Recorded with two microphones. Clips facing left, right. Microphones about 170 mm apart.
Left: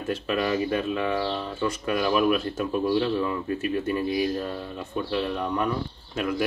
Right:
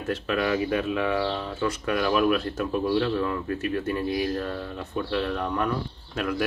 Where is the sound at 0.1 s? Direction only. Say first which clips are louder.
Even; centre (ahead or behind).